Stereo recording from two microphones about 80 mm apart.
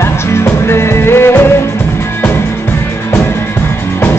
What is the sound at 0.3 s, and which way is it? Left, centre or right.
Music, left.